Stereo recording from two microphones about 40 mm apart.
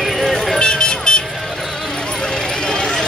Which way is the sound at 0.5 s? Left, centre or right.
Left.